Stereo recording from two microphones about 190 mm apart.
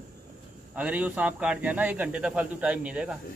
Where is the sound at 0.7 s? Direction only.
5° right (ahead or behind).